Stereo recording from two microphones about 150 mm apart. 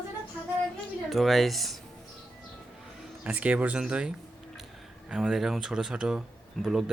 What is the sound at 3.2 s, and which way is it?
Speech, 10° right (ahead or behind).